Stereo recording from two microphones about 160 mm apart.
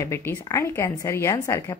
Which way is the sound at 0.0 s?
15° left (ahead or behind).